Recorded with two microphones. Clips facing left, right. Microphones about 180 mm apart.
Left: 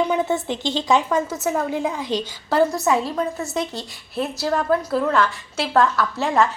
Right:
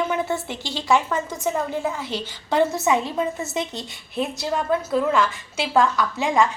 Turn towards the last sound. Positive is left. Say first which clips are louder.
# left 1 dB
turn(degrees=0)  # may be behind; listen again after turning